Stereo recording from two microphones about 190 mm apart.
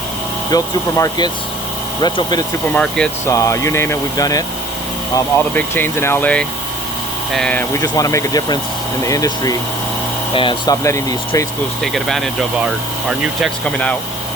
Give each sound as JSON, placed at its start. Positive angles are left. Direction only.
{"t": 0.5, "sound": "speech", "side_deg": 20}
{"t": 2.7, "sound": "speech", "side_deg": 5}
{"t": 3.2, "sound": "speech", "side_deg": 15}
{"t": 11.8, "sound": "speech", "side_deg": 0}